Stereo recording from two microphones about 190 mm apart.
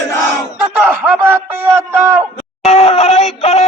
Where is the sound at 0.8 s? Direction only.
10° right (ahead or behind).